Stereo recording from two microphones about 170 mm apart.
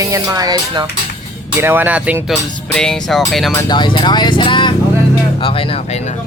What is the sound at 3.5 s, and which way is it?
Speech, 20° left (ahead or behind).